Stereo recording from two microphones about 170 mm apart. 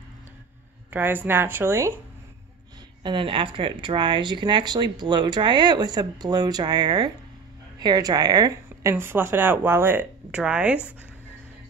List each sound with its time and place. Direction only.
0.8 s speech: 10° right (ahead or behind)
3.0 s speech: 30° right (ahead or behind); by 10.9 s 5° right (ahead or behind)